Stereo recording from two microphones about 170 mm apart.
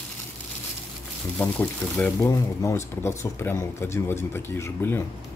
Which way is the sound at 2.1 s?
15° left (ahead or behind).